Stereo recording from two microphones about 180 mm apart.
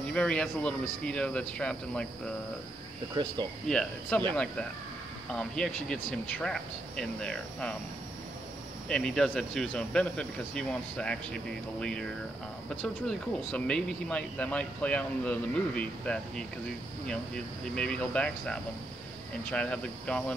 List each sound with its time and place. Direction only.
0.1 s speech: 5° left (ahead or behind)
3.2 s speech: 25° right (ahead or behind)
3.6 s speech: 5° left (ahead or behind)
8.8 s speech: 5° left (ahead or behind)
17.7 s speech: 5° left (ahead or behind)